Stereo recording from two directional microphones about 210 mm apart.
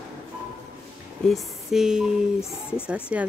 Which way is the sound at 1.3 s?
Centre (ahead or behind).